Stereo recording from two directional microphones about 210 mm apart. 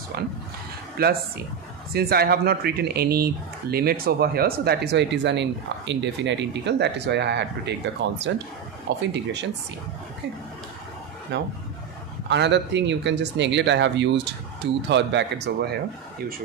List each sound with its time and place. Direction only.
0.1 s speech: 50° right (ahead or behind)
11.3 s speech: 55° right (ahead or behind)